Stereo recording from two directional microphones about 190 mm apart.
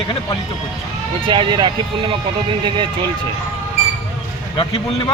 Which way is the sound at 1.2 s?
25° right (ahead or behind).